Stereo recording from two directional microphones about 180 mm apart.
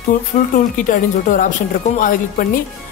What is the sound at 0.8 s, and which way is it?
Speech, 45° left (ahead or behind).